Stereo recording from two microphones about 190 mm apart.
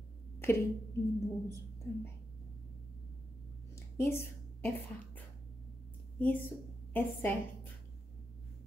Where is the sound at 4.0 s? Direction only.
15° left (ahead or behind).